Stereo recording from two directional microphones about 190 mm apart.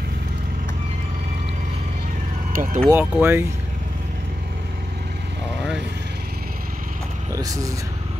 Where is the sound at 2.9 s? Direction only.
10° right (ahead or behind).